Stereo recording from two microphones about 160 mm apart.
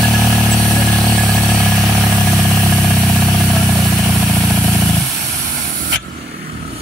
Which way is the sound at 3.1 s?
Centre (ahead or behind).